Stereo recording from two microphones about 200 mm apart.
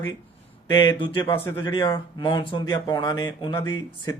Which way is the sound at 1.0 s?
25° left (ahead or behind).